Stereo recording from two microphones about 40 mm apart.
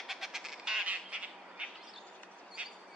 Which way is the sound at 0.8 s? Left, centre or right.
Right.